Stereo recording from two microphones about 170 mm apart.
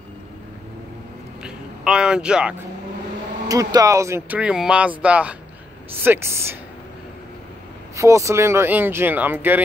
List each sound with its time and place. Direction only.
1.4 s a man's voice: 5° right (ahead or behind)
3.4 s speech: 20° right (ahead or behind)
4.4 s speech: 5° right (ahead or behind)
7.9 s speech: 15° right (ahead or behind)